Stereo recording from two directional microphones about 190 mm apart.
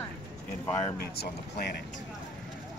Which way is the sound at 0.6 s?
25° left (ahead or behind).